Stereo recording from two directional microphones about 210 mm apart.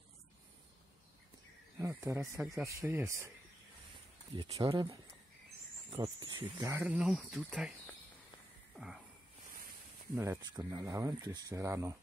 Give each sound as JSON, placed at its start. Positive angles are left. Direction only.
{"t": 1.8, "sound": "speech", "side_deg": -15}
{"t": 4.4, "sound": "speech", "side_deg": -20}
{"t": 10.1, "sound": "speech", "side_deg": -10}